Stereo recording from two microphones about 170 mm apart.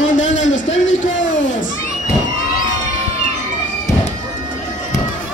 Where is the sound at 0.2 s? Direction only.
90° left.